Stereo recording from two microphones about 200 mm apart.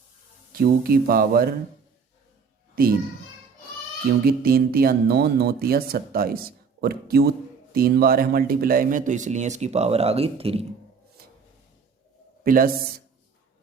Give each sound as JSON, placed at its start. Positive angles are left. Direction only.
{"t": 0.5, "sound": "speech", "side_deg": -50}
{"t": 2.8, "sound": "speech", "side_deg": -45}
{"t": 4.3, "sound": "a man's voice", "side_deg": -50}
{"t": 12.4, "sound": "speech", "side_deg": -45}